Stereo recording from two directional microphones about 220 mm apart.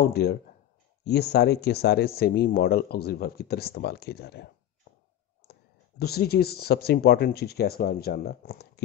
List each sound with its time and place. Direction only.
0.0 s speech: 50° left (ahead or behind)
5.5 s speech: 45° left (ahead or behind)